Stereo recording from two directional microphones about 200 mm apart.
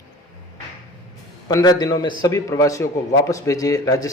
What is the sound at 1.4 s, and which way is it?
A man's voice, 20° left (ahead or behind).